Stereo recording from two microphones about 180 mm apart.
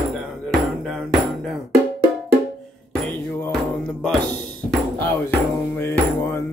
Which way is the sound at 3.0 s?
5° left (ahead or behind).